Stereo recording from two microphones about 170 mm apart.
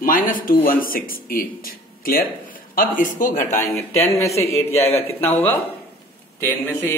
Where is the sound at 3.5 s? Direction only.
15° left (ahead or behind).